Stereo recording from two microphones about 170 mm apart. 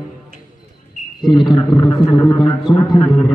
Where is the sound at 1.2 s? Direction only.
25° left (ahead or behind).